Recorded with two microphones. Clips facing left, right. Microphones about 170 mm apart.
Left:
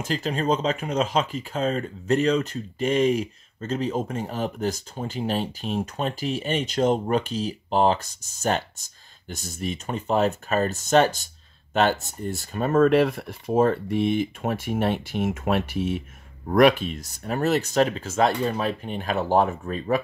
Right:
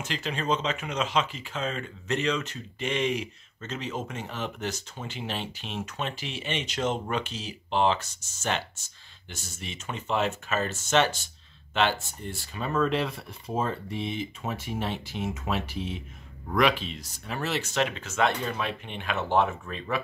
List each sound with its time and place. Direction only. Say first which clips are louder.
0.1 s speech: left 5 dB; 40° left (ahead or behind)